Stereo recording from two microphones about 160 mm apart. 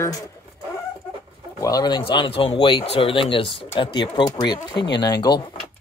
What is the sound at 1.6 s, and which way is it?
Speech, 20° left (ahead or behind).